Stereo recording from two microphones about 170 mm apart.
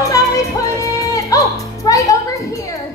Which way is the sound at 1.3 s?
20° left (ahead or behind).